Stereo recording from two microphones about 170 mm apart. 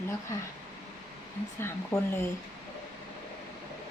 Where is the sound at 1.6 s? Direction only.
15° left (ahead or behind).